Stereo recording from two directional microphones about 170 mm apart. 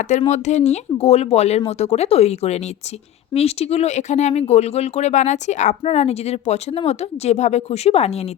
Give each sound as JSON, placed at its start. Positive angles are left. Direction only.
{"t": 0.2, "sound": "speech", "side_deg": 40}